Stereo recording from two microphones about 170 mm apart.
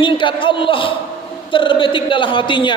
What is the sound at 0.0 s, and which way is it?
A man's voice, 30° left (ahead or behind).